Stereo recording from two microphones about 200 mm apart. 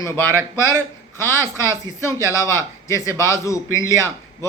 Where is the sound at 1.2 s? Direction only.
15° left (ahead or behind).